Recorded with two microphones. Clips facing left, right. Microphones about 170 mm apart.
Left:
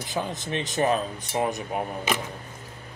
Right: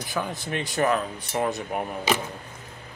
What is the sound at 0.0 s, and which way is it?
Speech, 20° left (ahead or behind).